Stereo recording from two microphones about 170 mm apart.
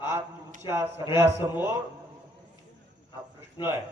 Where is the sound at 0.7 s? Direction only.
15° right (ahead or behind).